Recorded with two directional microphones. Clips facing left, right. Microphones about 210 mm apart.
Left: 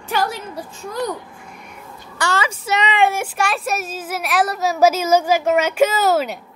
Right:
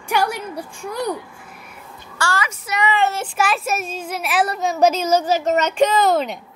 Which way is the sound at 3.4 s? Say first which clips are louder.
Right 3 dB; centre (ahead or behind).